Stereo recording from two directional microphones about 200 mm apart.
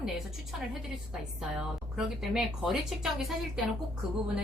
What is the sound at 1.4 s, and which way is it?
A woman's voice, 5° right (ahead or behind).